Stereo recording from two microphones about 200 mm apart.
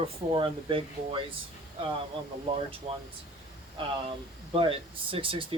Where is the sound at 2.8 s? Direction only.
30° right (ahead or behind).